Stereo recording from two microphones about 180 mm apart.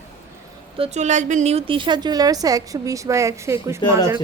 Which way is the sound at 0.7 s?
35° right (ahead or behind).